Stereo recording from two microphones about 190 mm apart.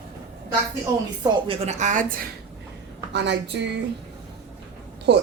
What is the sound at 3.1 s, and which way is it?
Speech, 65° right (ahead or behind).